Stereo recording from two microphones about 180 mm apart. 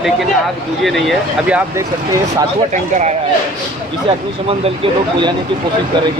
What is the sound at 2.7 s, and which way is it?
Speech, 40° right (ahead or behind).